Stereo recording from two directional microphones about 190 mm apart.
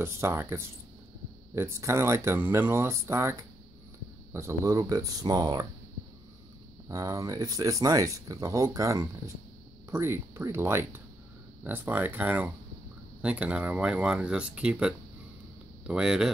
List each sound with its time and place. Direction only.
0.0 s speech: 15° right (ahead or behind)
6.9 s speech: 15° right (ahead or behind)